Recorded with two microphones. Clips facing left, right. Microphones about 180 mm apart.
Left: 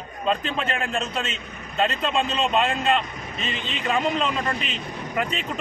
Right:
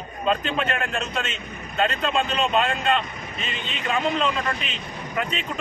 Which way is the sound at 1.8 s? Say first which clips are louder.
Even; centre (ahead or behind).